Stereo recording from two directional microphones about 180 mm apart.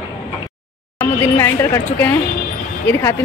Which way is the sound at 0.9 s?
15° left (ahead or behind).